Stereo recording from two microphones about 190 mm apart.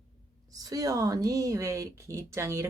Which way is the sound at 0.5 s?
20° right (ahead or behind).